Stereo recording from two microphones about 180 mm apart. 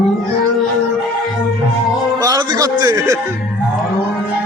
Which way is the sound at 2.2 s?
20° right (ahead or behind).